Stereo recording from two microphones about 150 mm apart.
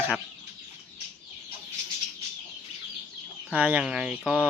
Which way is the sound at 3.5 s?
10° right (ahead or behind).